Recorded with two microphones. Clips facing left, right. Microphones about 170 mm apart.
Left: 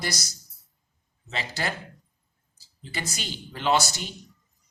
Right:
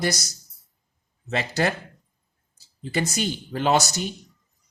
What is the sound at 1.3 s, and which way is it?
Speech, 50° right (ahead or behind).